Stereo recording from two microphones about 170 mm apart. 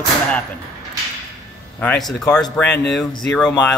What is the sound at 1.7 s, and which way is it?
Speech, 5° left (ahead or behind).